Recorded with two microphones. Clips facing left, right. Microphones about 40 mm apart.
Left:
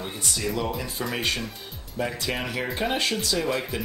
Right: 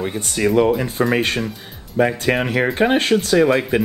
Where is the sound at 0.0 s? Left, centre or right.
Right.